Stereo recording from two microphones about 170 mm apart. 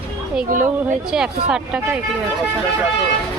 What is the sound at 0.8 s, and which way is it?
Speech, 5° right (ahead or behind).